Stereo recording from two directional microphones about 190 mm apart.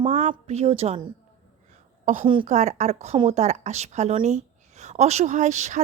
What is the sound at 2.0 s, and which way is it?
A woman's voice, 40° right (ahead or behind).